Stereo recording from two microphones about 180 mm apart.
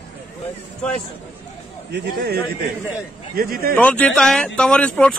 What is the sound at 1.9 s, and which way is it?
A man's voice, 65° right (ahead or behind).